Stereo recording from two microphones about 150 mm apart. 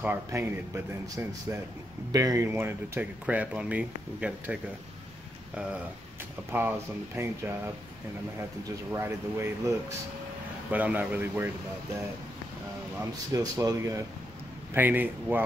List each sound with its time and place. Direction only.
0.0 s speech: 15° right (ahead or behind)
7.2 s speech: 15° right (ahead or behind)
13.0 s speech: 25° right (ahead or behind)